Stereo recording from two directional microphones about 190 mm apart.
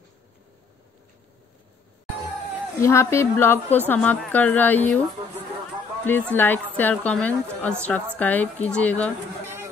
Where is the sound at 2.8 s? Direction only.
15° left (ahead or behind).